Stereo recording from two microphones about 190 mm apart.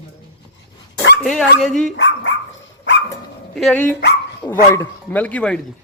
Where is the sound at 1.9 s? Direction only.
70° left (ahead or behind).